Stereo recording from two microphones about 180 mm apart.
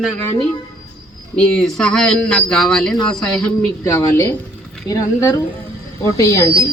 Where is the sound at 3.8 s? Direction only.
15° left (ahead or behind).